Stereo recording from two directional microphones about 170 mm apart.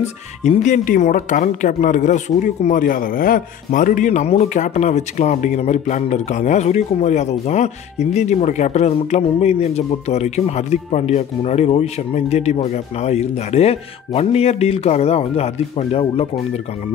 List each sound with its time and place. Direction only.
0.0 s speech: 40° left (ahead or behind)